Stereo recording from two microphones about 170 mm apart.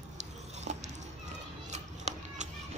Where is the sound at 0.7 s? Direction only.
45° right (ahead or behind).